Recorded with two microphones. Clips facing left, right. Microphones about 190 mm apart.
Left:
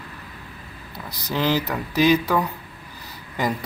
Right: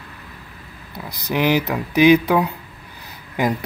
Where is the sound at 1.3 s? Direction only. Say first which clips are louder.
Right 4 dB; 15° right (ahead or behind).